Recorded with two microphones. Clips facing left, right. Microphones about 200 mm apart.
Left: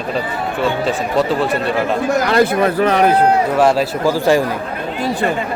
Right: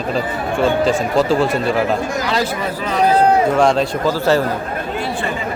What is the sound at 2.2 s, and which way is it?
Speech, 55° left (ahead or behind).